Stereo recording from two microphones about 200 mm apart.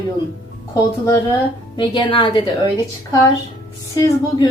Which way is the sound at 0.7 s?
20° left (ahead or behind).